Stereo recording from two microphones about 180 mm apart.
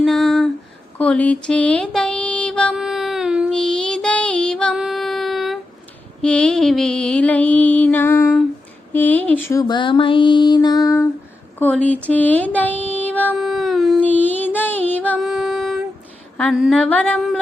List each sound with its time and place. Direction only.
0.0 s a sound: centre (ahead or behind)
0.9 s music: 5° left (ahead or behind)
6.2 s mantra: 5° left (ahead or behind)
8.9 s a sound: 10° left (ahead or behind)
11.6 s mantra: 10° left (ahead or behind)
12.5 s child singing: 10° left (ahead or behind)
13.3 s a sound: centre (ahead or behind)
14.1 s music: 10° left (ahead or behind)
16.4 s mantra: centre (ahead or behind)